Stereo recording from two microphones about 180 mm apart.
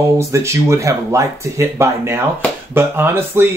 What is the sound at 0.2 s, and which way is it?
Speech, 15° right (ahead or behind).